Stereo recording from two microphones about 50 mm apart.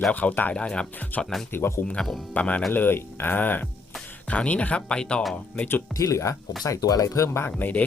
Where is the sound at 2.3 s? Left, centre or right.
Left.